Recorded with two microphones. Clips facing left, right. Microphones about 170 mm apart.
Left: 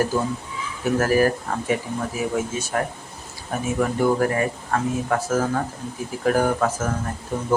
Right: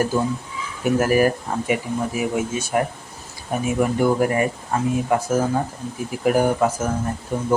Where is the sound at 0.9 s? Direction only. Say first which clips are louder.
Right 1 dB; 15° right (ahead or behind).